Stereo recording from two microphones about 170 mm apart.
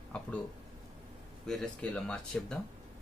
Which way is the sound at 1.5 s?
5° left (ahead or behind).